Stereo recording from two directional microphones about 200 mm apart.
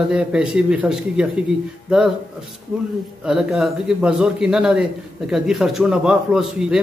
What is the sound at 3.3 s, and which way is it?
A man's voice, centre (ahead or behind).